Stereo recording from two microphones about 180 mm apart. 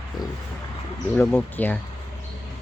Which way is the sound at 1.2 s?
10° left (ahead or behind).